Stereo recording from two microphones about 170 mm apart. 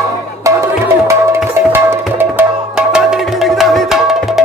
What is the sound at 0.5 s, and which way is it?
Music, 20° right (ahead or behind).